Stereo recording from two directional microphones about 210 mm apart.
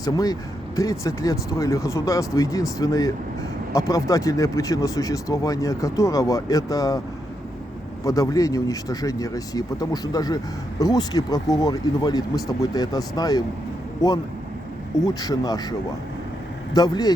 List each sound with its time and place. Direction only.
0.0 s speech: 15° left (ahead or behind)
8.0 s speech: 15° left (ahead or behind)
15.0 s speech: 15° left (ahead or behind)
16.7 s speech: 20° left (ahead or behind)